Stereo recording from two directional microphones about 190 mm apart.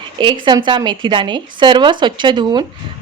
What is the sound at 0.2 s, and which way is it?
Speech, 25° right (ahead or behind).